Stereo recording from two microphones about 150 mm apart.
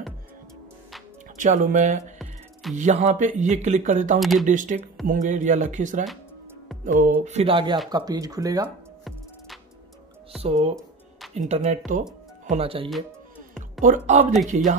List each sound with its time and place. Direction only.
1.4 s speech: 60° right (ahead or behind)
4.2 s speech: centre (ahead or behind)
4.5 s speech: 60° right (ahead or behind)
7.2 s speech: 40° right (ahead or behind); by 8.6 s 25° right (ahead or behind)
10.4 s speech: 45° right (ahead or behind)
12.4 s speech: 40° right (ahead or behind)
13.8 s speech: 50° right (ahead or behind)